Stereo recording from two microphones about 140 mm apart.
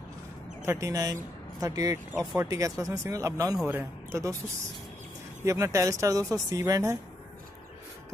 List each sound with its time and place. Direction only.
0.7 s a man's voice: 20° right (ahead or behind)
5.4 s speech: 20° right (ahead or behind)